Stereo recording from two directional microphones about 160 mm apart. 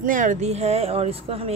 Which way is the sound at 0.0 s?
55° right (ahead or behind).